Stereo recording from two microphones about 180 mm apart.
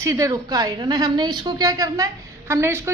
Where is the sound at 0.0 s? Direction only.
20° right (ahead or behind).